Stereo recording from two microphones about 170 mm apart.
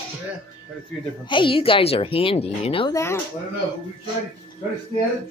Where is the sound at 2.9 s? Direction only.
15° left (ahead or behind).